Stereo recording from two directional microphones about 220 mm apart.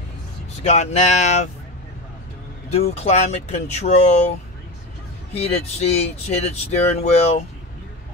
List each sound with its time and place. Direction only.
0.7 s speech: 30° left (ahead or behind)
2.7 s speech: 30° left (ahead or behind)
5.3 s speech: 30° left (ahead or behind)